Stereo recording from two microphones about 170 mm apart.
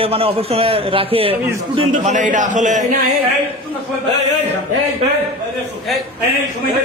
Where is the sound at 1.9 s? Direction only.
45° right (ahead or behind).